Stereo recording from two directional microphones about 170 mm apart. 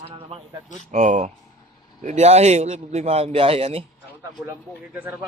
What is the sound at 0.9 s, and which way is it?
A man's voice, 45° right (ahead or behind).